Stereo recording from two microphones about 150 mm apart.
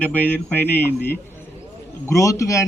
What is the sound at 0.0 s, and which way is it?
A man's voice, 10° left (ahead or behind).